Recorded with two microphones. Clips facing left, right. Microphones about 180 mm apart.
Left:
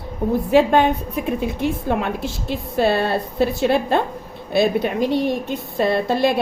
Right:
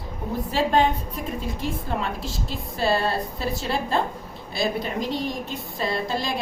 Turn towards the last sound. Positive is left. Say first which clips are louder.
# left 9 dB
turn(degrees=60)  # may be behind; listen again after turning